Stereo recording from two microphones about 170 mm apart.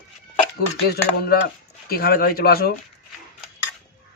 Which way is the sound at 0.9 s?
65° left (ahead or behind).